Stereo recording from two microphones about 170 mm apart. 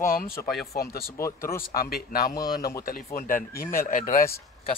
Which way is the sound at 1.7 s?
60° left (ahead or behind).